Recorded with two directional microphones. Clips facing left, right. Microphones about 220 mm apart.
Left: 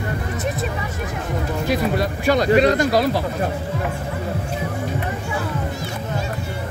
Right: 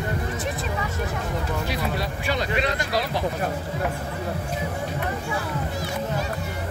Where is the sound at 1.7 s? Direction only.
45° left (ahead or behind).